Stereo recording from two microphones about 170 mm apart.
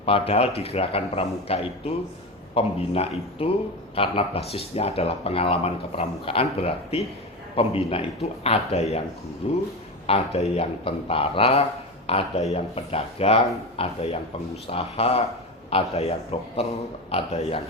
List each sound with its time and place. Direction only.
0.0 s speech: 35° left (ahead or behind)